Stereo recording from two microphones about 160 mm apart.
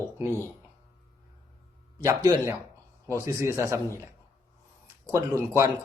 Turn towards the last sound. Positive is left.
turn(degrees=-15)  # may be behind; listen again after turning